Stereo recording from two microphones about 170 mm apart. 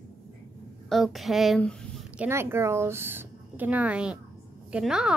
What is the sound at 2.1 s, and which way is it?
A woman's voice, 15° right (ahead or behind).